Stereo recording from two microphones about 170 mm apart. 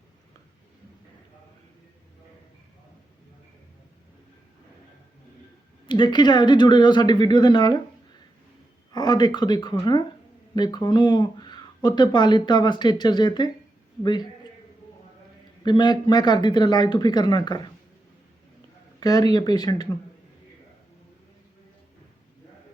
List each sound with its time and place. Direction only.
5.8 s speech: 25° left (ahead or behind)
8.9 s speech: 25° left (ahead or behind)
15.6 s speech: 25° left (ahead or behind)
18.9 s speech: 20° left (ahead or behind)